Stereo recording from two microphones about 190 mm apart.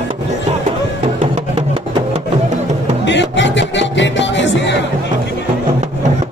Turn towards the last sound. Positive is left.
turn(degrees=70)  # may be behind; listen again after turning